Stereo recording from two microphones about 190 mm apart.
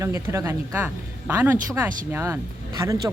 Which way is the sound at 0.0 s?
15° right (ahead or behind).